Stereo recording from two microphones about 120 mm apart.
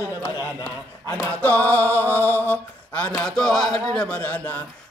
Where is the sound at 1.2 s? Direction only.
15° left (ahead or behind).